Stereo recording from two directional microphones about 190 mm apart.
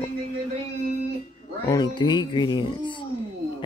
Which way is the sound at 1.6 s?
20° left (ahead or behind).